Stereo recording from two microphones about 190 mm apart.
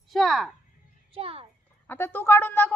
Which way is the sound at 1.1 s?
30° right (ahead or behind).